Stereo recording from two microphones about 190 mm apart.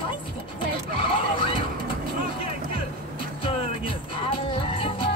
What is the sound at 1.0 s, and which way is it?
Speech, 30° left (ahead or behind).